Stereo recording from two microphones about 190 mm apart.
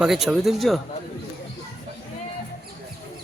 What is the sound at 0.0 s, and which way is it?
Speech, centre (ahead or behind).